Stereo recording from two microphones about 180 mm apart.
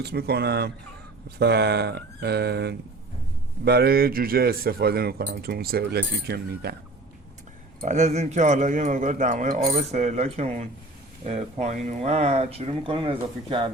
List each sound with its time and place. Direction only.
0.0 s speech: 60° right (ahead or behind)
7.8 s speech: 40° right (ahead or behind)